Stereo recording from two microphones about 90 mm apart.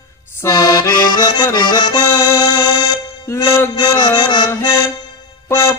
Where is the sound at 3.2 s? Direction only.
30° left (ahead or behind); by 4.7 s 50° left (ahead or behind).